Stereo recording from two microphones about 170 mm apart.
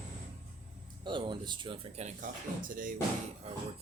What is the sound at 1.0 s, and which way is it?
Speech, 25° right (ahead or behind).